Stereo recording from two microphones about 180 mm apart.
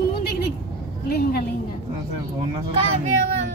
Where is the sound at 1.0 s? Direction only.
60° left (ahead or behind).